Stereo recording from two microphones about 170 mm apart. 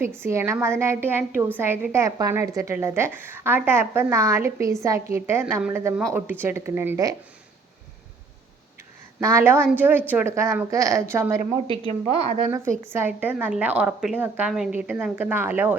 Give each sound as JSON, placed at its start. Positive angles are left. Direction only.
{"t": 0.0, "sound": "a woman's voice", "side_deg": -15}
{"t": 9.2, "sound": "a woman's voice", "side_deg": -15}
{"t": 11.7, "sound": "a woman's voice", "side_deg": -40}
{"t": 12.5, "sound": "a woman's voice", "side_deg": -15}